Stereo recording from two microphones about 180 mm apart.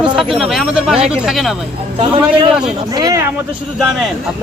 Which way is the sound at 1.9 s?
30° right (ahead or behind).